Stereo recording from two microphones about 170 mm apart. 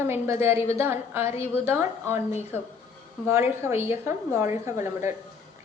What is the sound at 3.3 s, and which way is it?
A woman's voice, 15° right (ahead or behind).